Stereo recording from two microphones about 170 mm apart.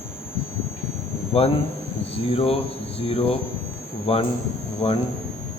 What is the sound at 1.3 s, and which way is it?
Speech, 35° left (ahead or behind).